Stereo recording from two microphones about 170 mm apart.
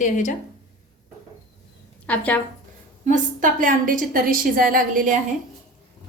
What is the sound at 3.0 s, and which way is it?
A woman's voice, 50° right (ahead or behind).